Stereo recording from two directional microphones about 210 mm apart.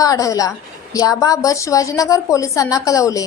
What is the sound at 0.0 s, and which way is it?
A woman's voice, 15° left (ahead or behind).